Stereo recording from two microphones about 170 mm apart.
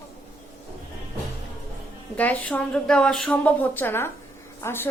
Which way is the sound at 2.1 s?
10° left (ahead or behind).